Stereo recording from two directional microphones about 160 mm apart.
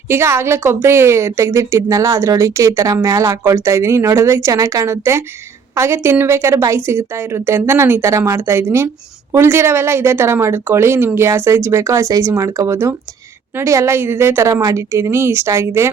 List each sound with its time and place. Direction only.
0.1 s a woman's voice: 15° right (ahead or behind)